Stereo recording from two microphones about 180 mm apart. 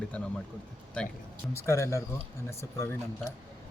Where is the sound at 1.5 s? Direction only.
15° left (ahead or behind).